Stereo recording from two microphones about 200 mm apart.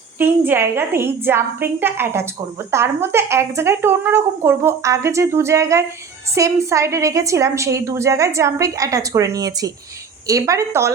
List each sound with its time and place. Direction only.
0.2 s a woman's voice: 10° right (ahead or behind)